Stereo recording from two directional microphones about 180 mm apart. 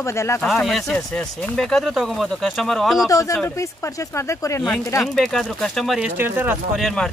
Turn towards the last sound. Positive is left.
turn(degrees=0)  # may be behind; listen again after turning